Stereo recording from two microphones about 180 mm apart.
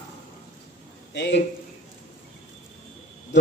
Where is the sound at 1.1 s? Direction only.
75° left (ahead or behind).